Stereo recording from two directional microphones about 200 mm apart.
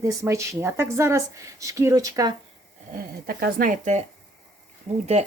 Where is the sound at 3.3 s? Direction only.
50° right (ahead or behind).